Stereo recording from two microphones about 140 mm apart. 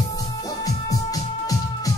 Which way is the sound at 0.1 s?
25° left (ahead or behind).